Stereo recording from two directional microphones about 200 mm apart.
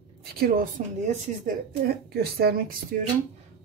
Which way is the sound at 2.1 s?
50° right (ahead or behind).